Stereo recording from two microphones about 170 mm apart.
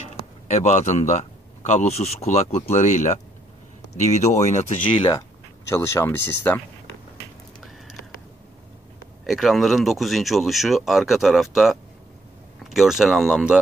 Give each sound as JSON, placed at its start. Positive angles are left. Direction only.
{"t": 0.5, "sound": "speech", "side_deg": 45}
{"t": 5.7, "sound": "speech", "side_deg": 15}
{"t": 9.2, "sound": "speech", "side_deg": 0}